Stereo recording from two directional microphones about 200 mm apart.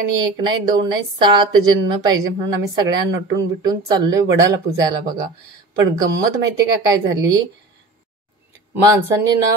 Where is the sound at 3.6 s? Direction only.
20° right (ahead or behind).